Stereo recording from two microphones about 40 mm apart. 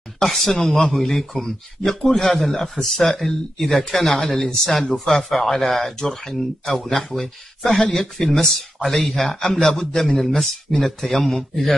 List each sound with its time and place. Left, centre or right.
0.2 s speech: centre